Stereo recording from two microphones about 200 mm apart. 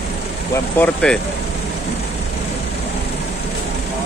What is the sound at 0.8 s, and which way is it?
Speech, 5° left (ahead or behind).